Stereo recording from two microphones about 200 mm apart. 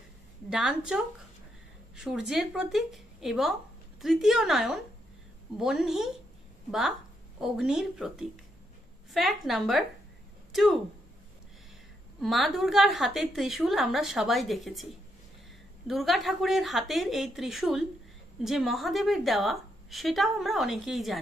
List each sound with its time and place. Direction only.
0.5 s a woman's voice: 5° right (ahead or behind)
7.3 s a woman's voice: centre (ahead or behind)
12.2 s a woman's voice: centre (ahead or behind)
15.9 s a woman's voice: centre (ahead or behind)